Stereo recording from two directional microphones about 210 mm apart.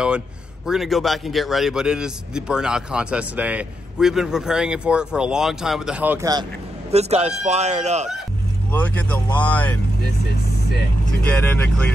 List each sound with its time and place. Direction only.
0.7 s a man's voice: centre (ahead or behind)
6.9 s speech: 30° right (ahead or behind)
9.4 s speech: 10° left (ahead or behind)
11.1 s a man's voice: 5° left (ahead or behind)